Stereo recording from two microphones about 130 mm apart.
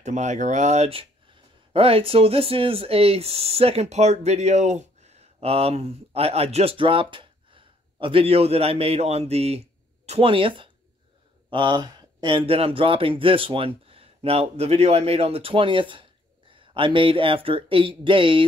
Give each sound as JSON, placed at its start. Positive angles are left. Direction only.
{"t": 0.0, "sound": "speech", "side_deg": -65}